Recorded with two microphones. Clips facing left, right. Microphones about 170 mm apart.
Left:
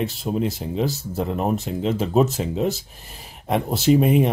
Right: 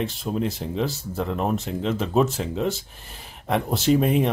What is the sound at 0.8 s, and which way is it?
Speech, 40° left (ahead or behind).